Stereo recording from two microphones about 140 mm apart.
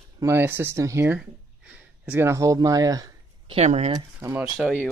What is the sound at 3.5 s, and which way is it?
Speech, 50° right (ahead or behind).